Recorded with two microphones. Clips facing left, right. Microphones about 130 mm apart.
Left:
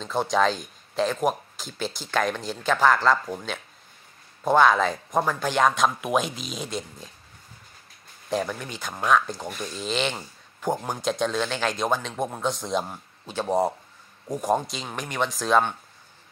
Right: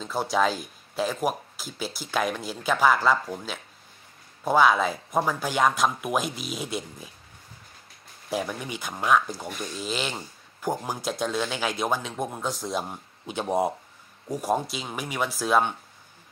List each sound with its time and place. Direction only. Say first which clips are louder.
0.0 s speech: left 2 dB; 5° right (ahead or behind)
8.3 s speech: left 2 dB; 5° right (ahead or behind)
12.8 s speech: right 2 dB; 15° right (ahead or behind)